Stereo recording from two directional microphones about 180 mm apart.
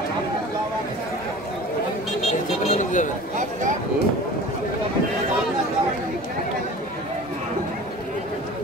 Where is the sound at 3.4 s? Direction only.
45° right (ahead or behind).